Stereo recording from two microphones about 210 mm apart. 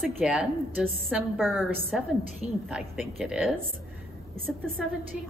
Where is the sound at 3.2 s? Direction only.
5° right (ahead or behind).